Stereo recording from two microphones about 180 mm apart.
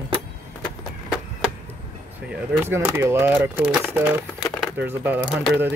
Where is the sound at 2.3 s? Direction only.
10° right (ahead or behind).